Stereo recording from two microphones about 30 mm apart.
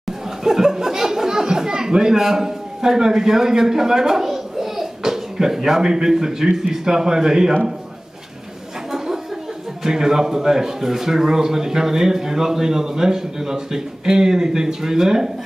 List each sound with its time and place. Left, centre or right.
0.4 s speech: centre
8.9 s a sound: centre
9.8 s speech: centre